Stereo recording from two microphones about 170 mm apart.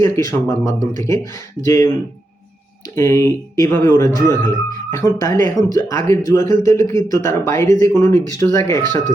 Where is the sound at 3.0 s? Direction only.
15° left (ahead or behind).